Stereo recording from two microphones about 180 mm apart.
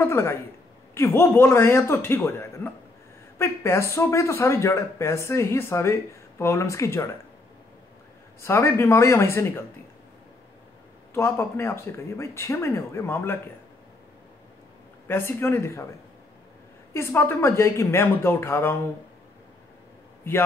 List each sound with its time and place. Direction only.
0.0 s speech: 15° left (ahead or behind)
8.4 s speech: 15° left (ahead or behind)
11.1 s speech: 15° left (ahead or behind)
15.0 s speech: 10° left (ahead or behind)
16.9 s speech: 15° left (ahead or behind)